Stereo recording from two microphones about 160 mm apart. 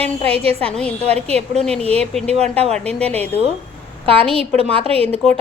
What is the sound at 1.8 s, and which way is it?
Speech, 40° right (ahead or behind).